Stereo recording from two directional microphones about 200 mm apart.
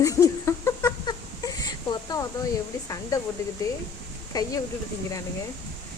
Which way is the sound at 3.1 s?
15° left (ahead or behind).